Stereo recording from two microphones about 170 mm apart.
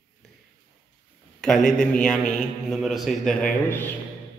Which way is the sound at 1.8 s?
5° left (ahead or behind).